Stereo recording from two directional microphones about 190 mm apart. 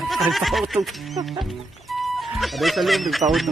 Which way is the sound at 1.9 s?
Centre (ahead or behind).